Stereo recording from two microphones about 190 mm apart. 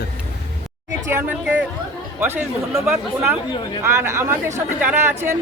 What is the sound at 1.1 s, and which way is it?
Speech, 10° right (ahead or behind).